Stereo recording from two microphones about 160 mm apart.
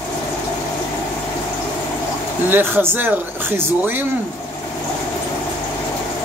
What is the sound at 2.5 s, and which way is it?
Speech, 15° right (ahead or behind).